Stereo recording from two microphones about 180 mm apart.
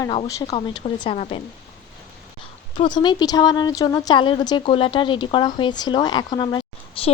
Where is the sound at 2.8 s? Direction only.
25° left (ahead or behind).